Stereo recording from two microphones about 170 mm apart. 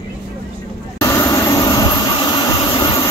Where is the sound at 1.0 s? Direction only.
15° left (ahead or behind).